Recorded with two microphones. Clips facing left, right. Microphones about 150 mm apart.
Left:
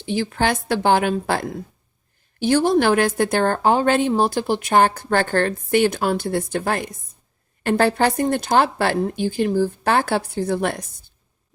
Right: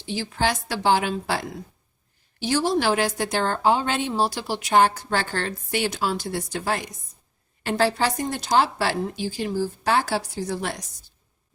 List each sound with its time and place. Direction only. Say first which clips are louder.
0.0 s a woman's voice: left 4 dB; 55° left (ahead or behind)